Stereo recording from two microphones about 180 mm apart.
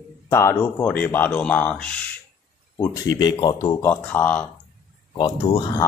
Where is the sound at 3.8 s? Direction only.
10° left (ahead or behind).